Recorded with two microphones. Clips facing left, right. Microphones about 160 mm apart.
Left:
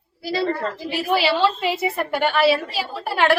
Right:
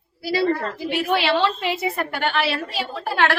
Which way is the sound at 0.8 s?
Centre (ahead or behind).